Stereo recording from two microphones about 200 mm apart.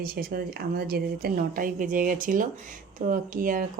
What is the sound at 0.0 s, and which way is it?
Speech, 50° right (ahead or behind).